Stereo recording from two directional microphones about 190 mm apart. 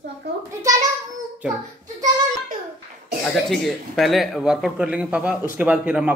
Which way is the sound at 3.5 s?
Centre (ahead or behind).